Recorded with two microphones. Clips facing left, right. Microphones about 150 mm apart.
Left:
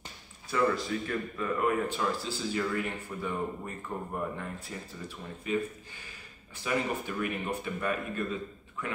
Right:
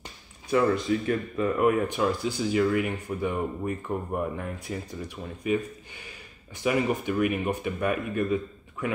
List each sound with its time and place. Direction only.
0.5 s speech: 20° right (ahead or behind)